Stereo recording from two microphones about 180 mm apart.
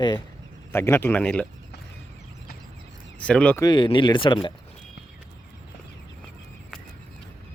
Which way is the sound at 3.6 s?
25° left (ahead or behind).